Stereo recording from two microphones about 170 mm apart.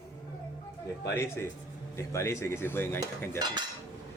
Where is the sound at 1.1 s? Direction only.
15° left (ahead or behind).